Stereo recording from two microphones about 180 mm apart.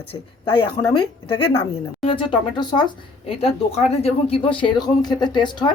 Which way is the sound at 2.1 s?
30° left (ahead or behind).